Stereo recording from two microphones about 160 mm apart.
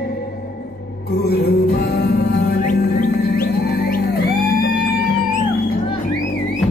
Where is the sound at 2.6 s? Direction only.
55° left (ahead or behind); by 4.0 s 70° left (ahead or behind).